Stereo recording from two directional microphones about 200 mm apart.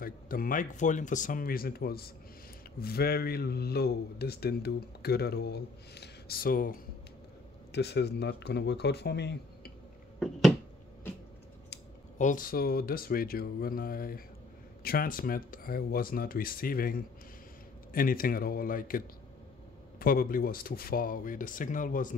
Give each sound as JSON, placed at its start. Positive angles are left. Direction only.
{"t": 0.0, "sound": "speech", "side_deg": 45}
{"t": 7.7, "sound": "speech", "side_deg": 55}
{"t": 10.1, "sound": "finger snapping", "side_deg": 0}
{"t": 12.2, "sound": "speech", "side_deg": 40}